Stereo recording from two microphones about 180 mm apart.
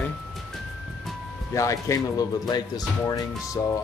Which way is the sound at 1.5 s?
15° left (ahead or behind).